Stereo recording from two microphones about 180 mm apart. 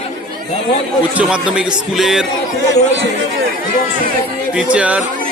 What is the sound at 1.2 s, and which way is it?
Speech, 5° right (ahead or behind).